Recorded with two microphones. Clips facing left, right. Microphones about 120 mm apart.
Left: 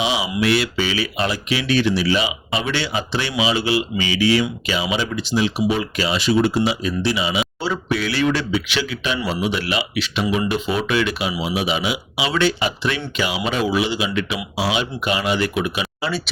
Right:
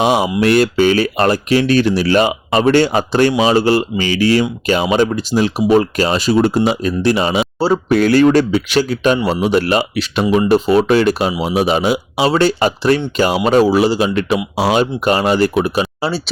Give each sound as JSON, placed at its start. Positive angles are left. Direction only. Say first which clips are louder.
{"t": 0.0, "sound": "speech", "louder": "right 7 dB", "side_deg": -50}